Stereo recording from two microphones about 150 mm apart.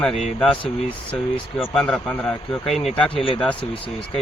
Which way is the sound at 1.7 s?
5° left (ahead or behind).